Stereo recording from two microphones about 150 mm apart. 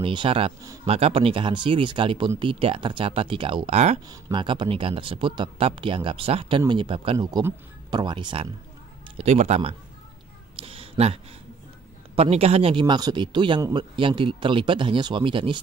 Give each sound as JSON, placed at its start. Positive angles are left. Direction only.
{"t": 0.0, "sound": "speech", "side_deg": -35}
{"t": 4.1, "sound": "speech", "side_deg": -30}
{"t": 9.1, "sound": "speech", "side_deg": -45}
{"t": 10.5, "sound": "a sound", "side_deg": -40}
{"t": 12.2, "sound": "a man's voice", "side_deg": -45}
{"t": 13.9, "sound": "speech", "side_deg": -35}